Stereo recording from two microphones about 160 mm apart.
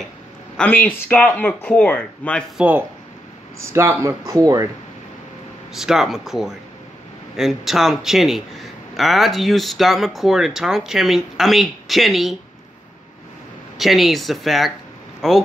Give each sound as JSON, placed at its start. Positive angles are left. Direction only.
{"t": 0.6, "sound": "speech", "side_deg": 10}
{"t": 2.5, "sound": "speech", "side_deg": -10}
{"t": 5.7, "sound": "speech", "side_deg": 0}
{"t": 13.7, "sound": "speech", "side_deg": 0}